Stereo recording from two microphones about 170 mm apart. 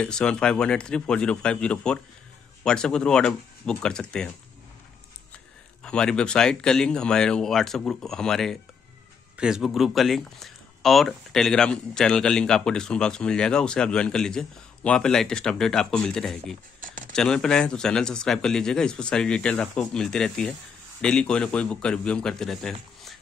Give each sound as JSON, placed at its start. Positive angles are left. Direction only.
{"t": 0.0, "sound": "speech", "side_deg": 5}
{"t": 5.9, "sound": "speech", "side_deg": 5}
{"t": 16.8, "sound": "a sound", "side_deg": -50}
{"t": 17.1, "sound": "speech", "side_deg": 5}